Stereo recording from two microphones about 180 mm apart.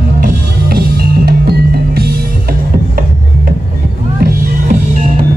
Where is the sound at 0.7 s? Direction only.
60° right (ahead or behind).